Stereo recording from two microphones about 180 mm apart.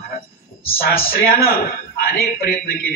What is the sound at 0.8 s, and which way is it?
A man's voice, 55° left (ahead or behind).